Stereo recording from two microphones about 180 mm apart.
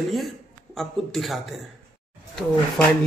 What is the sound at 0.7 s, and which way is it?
Speech, centre (ahead or behind).